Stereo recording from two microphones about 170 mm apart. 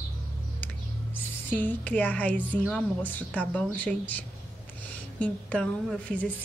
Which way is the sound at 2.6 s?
5° left (ahead or behind).